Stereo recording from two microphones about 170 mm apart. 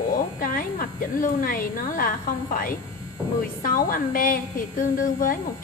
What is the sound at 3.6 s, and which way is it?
A woman's voice, 55° left (ahead or behind).